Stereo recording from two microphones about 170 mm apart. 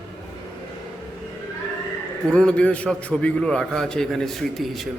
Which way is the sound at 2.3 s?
5° left (ahead or behind).